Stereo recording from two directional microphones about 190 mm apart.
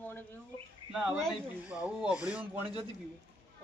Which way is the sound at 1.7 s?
5° right (ahead or behind).